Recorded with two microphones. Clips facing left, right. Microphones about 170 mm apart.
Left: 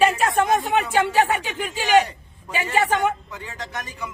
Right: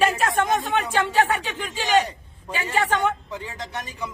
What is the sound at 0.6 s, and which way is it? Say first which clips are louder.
Speech: left 3 dB; 15° left (ahead or behind).